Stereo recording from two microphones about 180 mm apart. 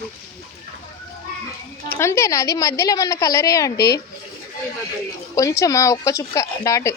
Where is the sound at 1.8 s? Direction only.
10° left (ahead or behind).